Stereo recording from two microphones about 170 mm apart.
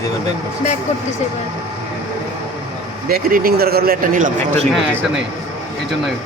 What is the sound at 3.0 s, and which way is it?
A man's voice, 60° right (ahead or behind).